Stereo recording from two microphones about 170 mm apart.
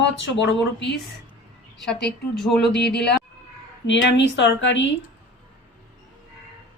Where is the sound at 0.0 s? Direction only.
90° left.